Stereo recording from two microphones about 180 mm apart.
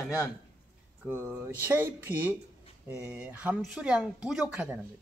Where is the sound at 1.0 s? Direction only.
15° right (ahead or behind).